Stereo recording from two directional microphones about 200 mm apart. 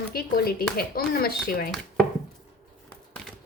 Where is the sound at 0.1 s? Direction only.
50° left (ahead or behind).